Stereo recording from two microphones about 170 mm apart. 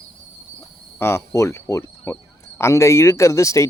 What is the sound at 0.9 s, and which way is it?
Speech, 15° left (ahead or behind).